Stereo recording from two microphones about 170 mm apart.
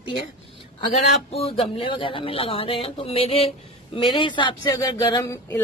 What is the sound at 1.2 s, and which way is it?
A woman's voice, 35° left (ahead or behind).